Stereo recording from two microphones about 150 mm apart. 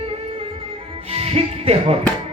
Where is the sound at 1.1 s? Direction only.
40° right (ahead or behind).